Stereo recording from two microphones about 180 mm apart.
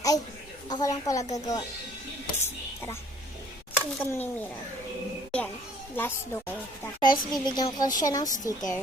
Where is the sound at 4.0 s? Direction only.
15° left (ahead or behind).